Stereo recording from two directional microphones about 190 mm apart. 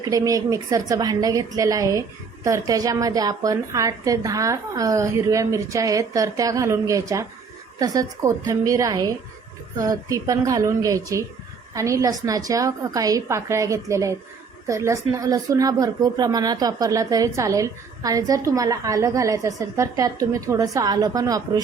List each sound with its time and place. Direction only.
0.0 s a woman's voice: 20° right (ahead or behind)